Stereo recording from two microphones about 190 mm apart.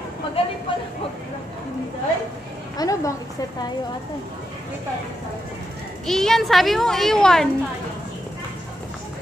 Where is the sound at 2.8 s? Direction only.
20° left (ahead or behind).